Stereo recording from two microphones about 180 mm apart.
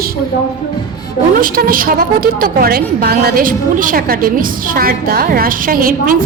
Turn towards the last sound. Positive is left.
turn(degrees=-50)  # may be behind; listen again after turning